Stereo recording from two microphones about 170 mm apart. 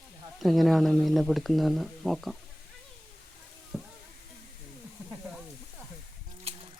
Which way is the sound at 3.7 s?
Centre (ahead or behind).